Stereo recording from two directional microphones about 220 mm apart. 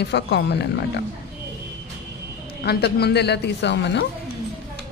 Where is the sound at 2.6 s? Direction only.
50° left (ahead or behind).